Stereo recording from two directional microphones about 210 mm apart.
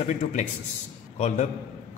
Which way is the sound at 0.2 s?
35° left (ahead or behind).